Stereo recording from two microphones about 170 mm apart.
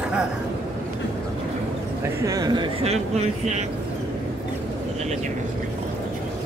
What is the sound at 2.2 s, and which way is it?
Speech, 20° right (ahead or behind).